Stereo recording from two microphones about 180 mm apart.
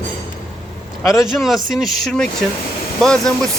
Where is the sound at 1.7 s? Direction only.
Centre (ahead or behind).